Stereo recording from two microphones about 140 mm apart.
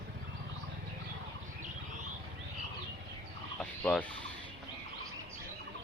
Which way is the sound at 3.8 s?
10° left (ahead or behind).